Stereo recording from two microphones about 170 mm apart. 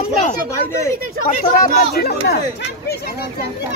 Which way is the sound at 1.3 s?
50° left (ahead or behind).